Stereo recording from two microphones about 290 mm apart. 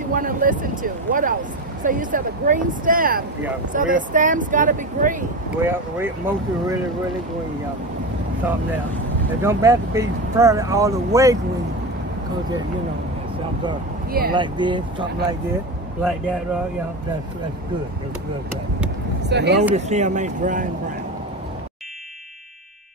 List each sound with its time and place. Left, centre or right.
0.1 s speech: right
5.6 s speech: centre
9.4 s speech: centre
14.3 s speech: centre
16.0 s speech: centre
19.2 s speech: right
19.7 s speech: right